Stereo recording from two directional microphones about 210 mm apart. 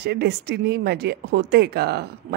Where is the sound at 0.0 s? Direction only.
50° right (ahead or behind).